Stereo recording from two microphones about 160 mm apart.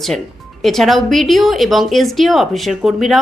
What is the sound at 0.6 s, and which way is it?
A woman's voice, centre (ahead or behind).